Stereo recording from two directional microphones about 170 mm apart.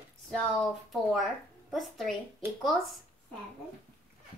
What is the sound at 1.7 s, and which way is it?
Speech, centre (ahead or behind).